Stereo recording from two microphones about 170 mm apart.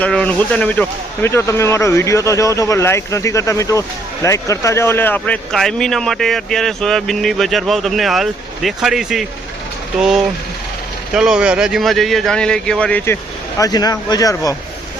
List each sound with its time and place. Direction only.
0.0 s speech: 10° left (ahead or behind)
13.6 s speech: 20° left (ahead or behind)